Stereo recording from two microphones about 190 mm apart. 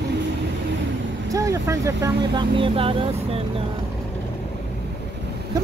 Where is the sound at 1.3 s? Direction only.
15° right (ahead or behind).